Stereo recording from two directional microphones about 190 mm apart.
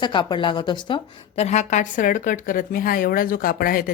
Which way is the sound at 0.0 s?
25° left (ahead or behind).